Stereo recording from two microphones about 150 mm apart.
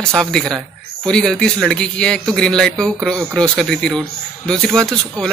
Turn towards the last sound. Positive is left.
turn(degrees=5)  # may be behind; listen again after turning